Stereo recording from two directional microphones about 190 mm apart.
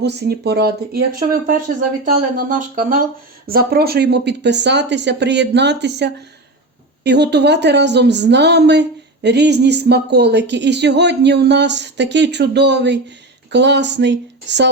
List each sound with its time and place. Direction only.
0.0 s a woman's voice: 65° right (ahead or behind)